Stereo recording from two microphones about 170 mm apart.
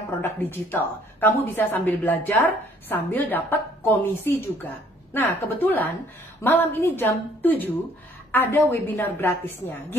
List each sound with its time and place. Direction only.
0.2 s a woman's voice: 10° left (ahead or behind)